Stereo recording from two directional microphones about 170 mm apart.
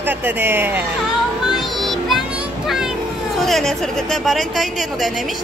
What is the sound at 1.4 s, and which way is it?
Music, centre (ahead or behind).